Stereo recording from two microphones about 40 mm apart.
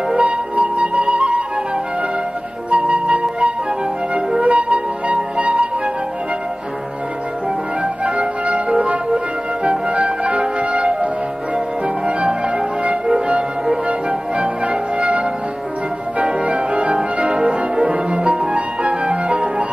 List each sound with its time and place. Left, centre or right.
0.2 s flute: right
2.7 s flute: right
7.8 s music: right
12.1 s music: right
13.8 s music: right